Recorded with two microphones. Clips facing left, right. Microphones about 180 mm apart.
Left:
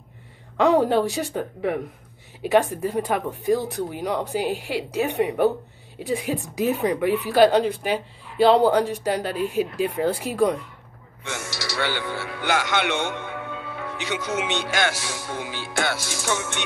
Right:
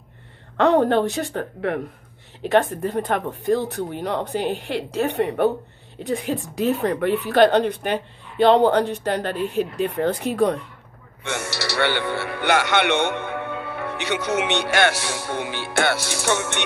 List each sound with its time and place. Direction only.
0.6 s speech: 10° left (ahead or behind)
11.2 s speech: 65° right (ahead or behind)